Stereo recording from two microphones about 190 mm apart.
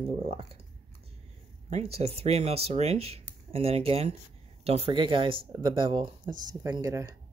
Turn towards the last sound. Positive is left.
turn(degrees=-15)  # may be behind; listen again after turning